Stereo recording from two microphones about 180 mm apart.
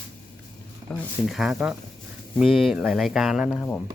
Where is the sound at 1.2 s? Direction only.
Centre (ahead or behind).